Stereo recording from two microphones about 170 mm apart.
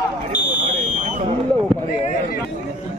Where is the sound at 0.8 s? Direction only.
45° right (ahead or behind).